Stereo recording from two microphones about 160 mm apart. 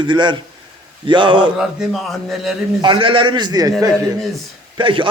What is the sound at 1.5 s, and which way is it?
A man's voice, 5° right (ahead or behind).